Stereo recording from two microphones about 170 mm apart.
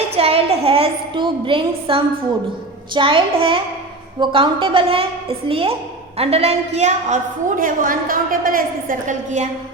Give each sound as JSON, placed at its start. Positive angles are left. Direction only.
{"t": 0.2, "sound": "a woman's voice", "side_deg": -35}